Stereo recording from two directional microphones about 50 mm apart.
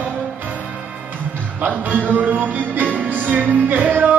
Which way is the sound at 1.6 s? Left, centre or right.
Right.